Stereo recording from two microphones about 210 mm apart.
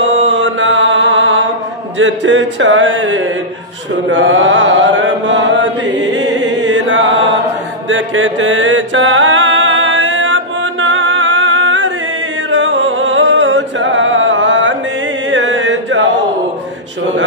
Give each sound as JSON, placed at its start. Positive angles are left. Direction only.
{"t": 0.0, "sound": "mantra", "side_deg": -60}
{"t": 2.0, "sound": "a sound", "side_deg": -60}
{"t": 4.1, "sound": "chant", "side_deg": -60}
{"t": 7.9, "sound": "mantra", "side_deg": -65}
{"t": 12.4, "sound": "music", "side_deg": -65}